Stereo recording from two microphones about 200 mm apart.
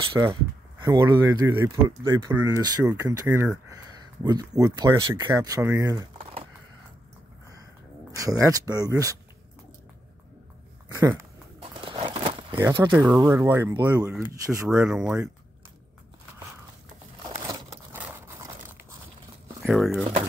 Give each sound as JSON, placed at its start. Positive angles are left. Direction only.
{"t": 0.0, "sound": "speech", "side_deg": -25}
{"t": 8.2, "sound": "speech", "side_deg": -15}
{"t": 10.9, "sound": "speech", "side_deg": -15}
{"t": 11.6, "sound": "crumpling", "side_deg": -25}
{"t": 12.5, "sound": "speech", "side_deg": -10}
{"t": 17.5, "sound": "a sound", "side_deg": -10}
{"t": 19.6, "sound": "speech", "side_deg": 0}